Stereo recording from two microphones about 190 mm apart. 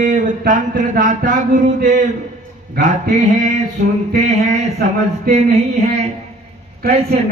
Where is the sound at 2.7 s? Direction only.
40° right (ahead or behind).